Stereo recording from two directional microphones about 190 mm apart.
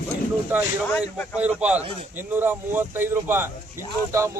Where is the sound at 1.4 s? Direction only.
5° right (ahead or behind).